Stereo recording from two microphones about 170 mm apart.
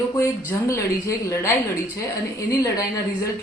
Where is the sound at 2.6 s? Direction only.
20° left (ahead or behind).